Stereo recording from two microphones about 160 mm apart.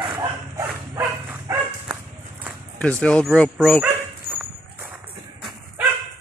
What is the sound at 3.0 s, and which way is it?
Speech, 5° left (ahead or behind).